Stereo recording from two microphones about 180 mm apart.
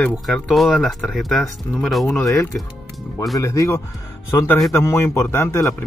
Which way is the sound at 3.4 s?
15° left (ahead or behind).